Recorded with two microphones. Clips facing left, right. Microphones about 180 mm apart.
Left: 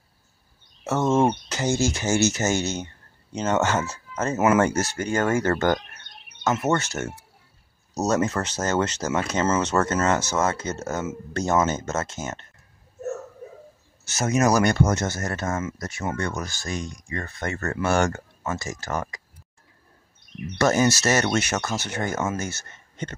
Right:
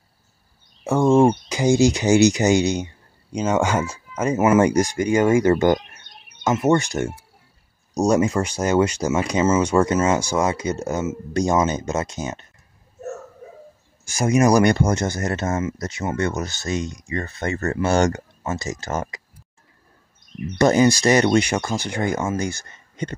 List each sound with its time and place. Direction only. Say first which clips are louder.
0.8 s speech: right 5 dB; 10° right (ahead or behind)
14.0 s speech: right 4 dB; 10° right (ahead or behind)
20.5 s speech: right 4 dB; 15° right (ahead or behind)